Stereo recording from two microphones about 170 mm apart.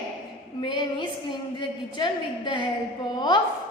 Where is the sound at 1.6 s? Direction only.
30° left (ahead or behind).